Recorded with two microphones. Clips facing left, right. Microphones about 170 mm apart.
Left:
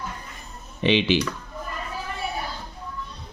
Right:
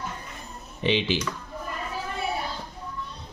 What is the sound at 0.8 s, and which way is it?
Speech, 80° left.